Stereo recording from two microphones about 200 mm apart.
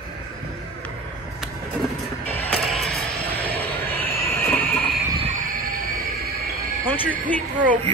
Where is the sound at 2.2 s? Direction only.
10° left (ahead or behind).